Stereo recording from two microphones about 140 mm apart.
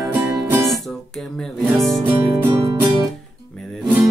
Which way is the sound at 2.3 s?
25° right (ahead or behind).